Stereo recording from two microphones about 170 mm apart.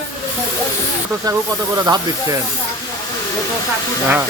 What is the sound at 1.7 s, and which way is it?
Speech, 20° right (ahead or behind).